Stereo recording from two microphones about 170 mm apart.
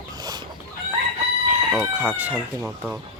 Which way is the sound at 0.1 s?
25° right (ahead or behind).